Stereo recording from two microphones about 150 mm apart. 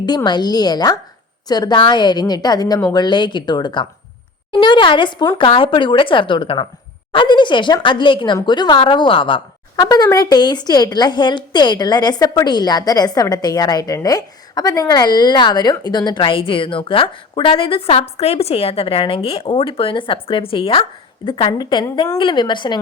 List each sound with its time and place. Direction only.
0.3 s a woman's voice: 30° left (ahead or behind)